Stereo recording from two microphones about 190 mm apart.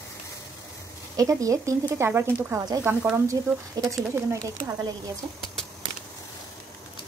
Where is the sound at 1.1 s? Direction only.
20° right (ahead or behind).